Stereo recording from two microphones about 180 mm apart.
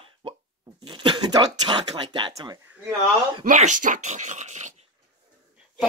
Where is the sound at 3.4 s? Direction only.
45° right (ahead or behind).